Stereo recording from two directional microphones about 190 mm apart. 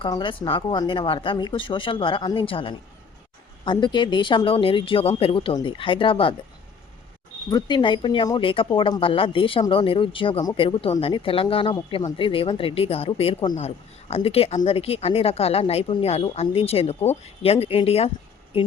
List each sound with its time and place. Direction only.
0.0 s speech: 25° left (ahead or behind)
7.5 s speech: 25° left (ahead or behind)